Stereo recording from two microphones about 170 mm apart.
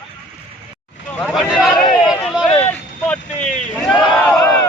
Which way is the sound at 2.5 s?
10° left (ahead or behind).